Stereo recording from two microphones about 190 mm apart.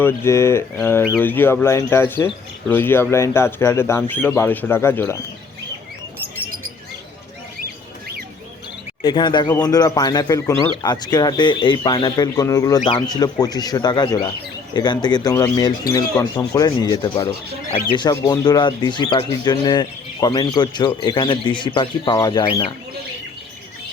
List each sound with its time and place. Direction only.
0.0 s speech: 15° left (ahead or behind)
9.0 s speech: 25° left (ahead or behind)